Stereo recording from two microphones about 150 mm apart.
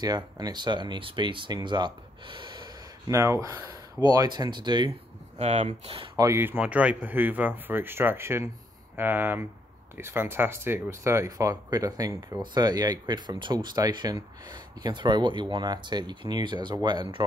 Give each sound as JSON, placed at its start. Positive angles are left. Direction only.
{"t": 0.0, "sound": "speech", "side_deg": -25}
{"t": 3.1, "sound": "speech", "side_deg": -20}
{"t": 5.4, "sound": "speech", "side_deg": -45}
{"t": 6.1, "sound": "speech", "side_deg": -20}